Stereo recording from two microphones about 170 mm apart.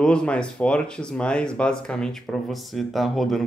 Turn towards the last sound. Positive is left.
turn(degrees=0)  # may be behind; listen again after turning